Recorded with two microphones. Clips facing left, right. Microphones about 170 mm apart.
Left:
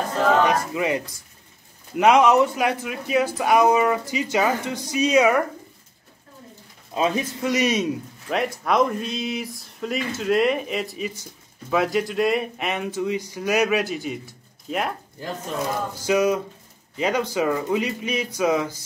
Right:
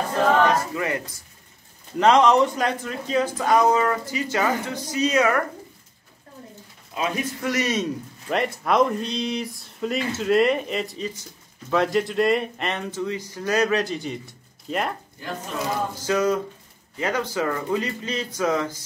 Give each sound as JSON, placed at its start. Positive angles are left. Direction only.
{"t": 0.5, "sound": "speech", "side_deg": 15}
{"t": 6.9, "sound": "speech", "side_deg": 30}
{"t": 7.5, "sound": "speech", "side_deg": 15}
{"t": 8.3, "sound": "speech", "side_deg": 0}
{"t": 16.1, "sound": "speech", "side_deg": 15}